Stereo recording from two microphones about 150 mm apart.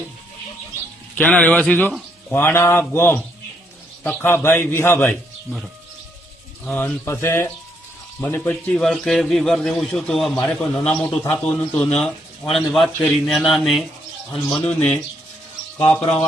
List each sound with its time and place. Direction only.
1.1 s a man's voice: 10° left (ahead or behind)
5.5 s a man's voice: 5° right (ahead or behind)
6.7 s a man's voice: 10° left (ahead or behind)